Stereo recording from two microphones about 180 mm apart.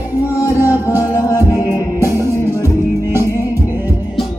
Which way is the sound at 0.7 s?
10° right (ahead or behind).